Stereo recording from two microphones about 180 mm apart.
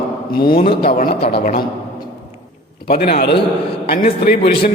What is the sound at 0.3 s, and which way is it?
Speech, 55° left (ahead or behind).